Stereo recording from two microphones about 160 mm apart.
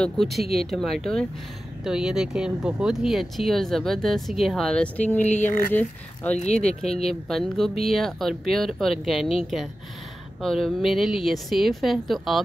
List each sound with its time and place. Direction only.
0.0 s speech: centre (ahead or behind)
6.7 s speech: 40° left (ahead or behind)
7.0 s speech: centre (ahead or behind)